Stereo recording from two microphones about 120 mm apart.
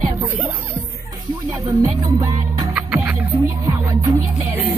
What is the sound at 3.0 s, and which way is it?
Music, 25° right (ahead or behind).